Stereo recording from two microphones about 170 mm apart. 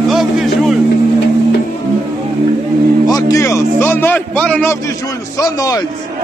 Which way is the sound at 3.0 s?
20° left (ahead or behind).